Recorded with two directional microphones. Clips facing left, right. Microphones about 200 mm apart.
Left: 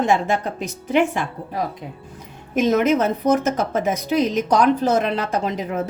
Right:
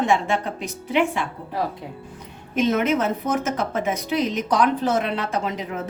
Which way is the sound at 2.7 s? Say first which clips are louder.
Left 5 dB; 40° left (ahead or behind).